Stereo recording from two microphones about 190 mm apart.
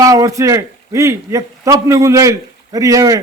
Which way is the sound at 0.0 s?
15° right (ahead or behind).